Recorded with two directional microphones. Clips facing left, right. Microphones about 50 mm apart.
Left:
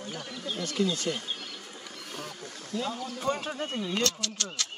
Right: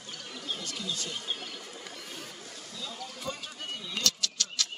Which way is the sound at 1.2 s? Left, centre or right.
Centre.